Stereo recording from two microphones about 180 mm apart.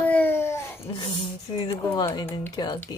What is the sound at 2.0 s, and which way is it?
Speech, 15° left (ahead or behind).